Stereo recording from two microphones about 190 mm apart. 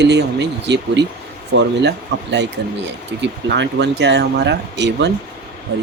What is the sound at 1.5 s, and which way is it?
Speech, 75° right (ahead or behind).